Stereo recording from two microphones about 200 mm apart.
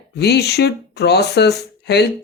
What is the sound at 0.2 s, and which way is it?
Speech, 55° left (ahead or behind).